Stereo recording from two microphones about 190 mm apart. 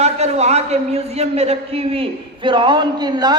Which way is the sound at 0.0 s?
35° right (ahead or behind).